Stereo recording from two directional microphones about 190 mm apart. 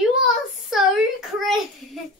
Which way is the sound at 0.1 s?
Centre (ahead or behind).